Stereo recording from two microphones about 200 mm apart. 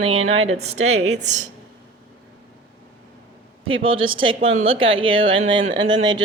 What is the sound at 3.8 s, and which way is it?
A woman's voice, 25° right (ahead or behind).